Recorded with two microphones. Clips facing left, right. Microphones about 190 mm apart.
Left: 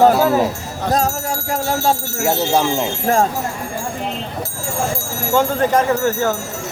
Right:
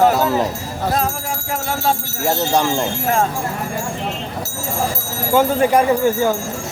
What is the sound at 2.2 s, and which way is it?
Speech, 5° left (ahead or behind).